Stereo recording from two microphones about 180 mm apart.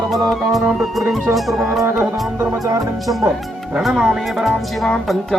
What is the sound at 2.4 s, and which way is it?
Music, 20° right (ahead or behind).